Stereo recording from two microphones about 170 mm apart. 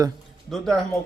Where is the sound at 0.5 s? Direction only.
Centre (ahead or behind).